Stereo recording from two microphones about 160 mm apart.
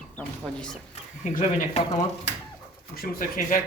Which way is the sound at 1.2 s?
55° left (ahead or behind).